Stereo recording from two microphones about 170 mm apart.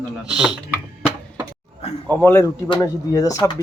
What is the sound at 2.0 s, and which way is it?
Speech, 10° left (ahead or behind).